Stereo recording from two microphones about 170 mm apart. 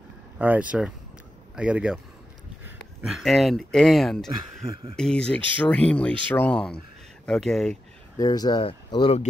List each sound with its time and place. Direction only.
0.4 s speech: 10° right (ahead or behind)
3.1 s speech: centre (ahead or behind)
8.2 s speech: 20° left (ahead or behind)